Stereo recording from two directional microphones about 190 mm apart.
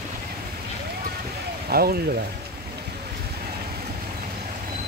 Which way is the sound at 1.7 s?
55° right (ahead or behind).